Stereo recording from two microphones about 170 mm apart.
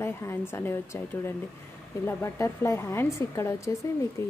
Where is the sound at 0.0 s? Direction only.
15° left (ahead or behind).